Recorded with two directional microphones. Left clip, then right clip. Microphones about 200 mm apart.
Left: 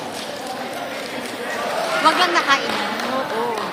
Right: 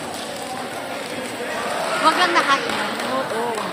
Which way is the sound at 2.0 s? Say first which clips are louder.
Even; 30° left (ahead or behind).